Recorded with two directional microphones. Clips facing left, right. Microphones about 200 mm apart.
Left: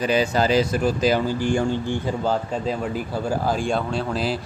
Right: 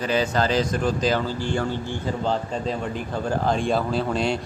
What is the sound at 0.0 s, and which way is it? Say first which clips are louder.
Speech: left 2 dB; 10° left (ahead or behind).